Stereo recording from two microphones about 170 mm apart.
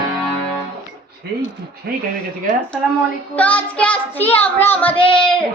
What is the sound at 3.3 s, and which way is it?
Child singing, 10° left (ahead or behind).